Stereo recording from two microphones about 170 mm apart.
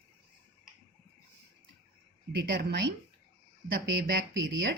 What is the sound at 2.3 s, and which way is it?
Speech, 75° right (ahead or behind).